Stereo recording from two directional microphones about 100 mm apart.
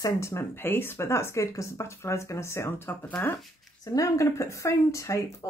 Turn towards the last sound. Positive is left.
turn(degrees=30)  # may be behind; listen again after turning